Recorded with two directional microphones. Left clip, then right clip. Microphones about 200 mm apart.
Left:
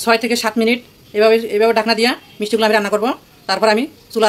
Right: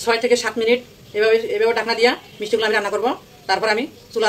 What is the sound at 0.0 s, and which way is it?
Speech, 55° left (ahead or behind).